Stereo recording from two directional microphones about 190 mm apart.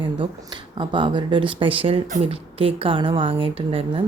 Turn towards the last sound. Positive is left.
turn(degrees=-30)  # may be behind; listen again after turning